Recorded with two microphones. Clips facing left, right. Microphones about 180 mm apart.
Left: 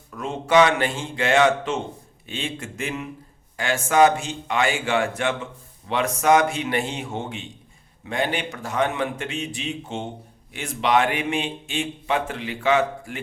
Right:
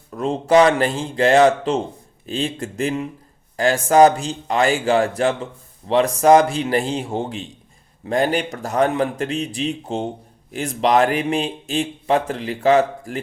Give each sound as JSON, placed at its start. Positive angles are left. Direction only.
{"t": 0.1, "sound": "a man's voice", "side_deg": -35}